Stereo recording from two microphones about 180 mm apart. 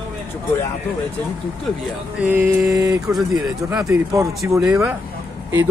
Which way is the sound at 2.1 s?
10° right (ahead or behind).